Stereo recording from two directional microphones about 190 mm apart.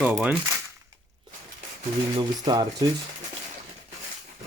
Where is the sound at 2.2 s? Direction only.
20° right (ahead or behind).